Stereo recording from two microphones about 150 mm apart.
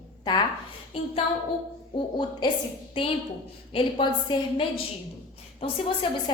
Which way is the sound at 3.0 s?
35° left (ahead or behind).